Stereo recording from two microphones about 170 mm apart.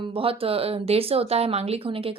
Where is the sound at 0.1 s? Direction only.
35° right (ahead or behind).